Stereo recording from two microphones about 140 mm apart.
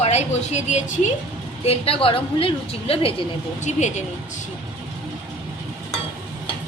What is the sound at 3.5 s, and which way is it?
Speech, 55° left (ahead or behind).